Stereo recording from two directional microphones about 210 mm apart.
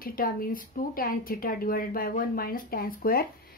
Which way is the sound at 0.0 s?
45° left (ahead or behind).